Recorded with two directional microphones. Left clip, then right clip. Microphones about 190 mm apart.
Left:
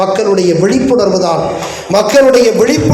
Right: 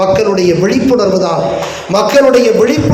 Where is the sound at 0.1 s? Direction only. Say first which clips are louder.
Even; 40° left (ahead or behind).